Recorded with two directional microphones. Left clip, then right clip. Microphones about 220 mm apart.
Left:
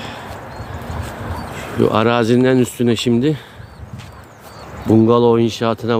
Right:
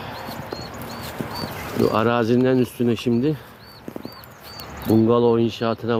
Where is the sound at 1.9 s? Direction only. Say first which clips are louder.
Left 5 dB; 15° left (ahead or behind).